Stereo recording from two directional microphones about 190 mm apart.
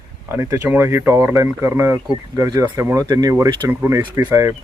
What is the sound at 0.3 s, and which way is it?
Speech, 10° right (ahead or behind).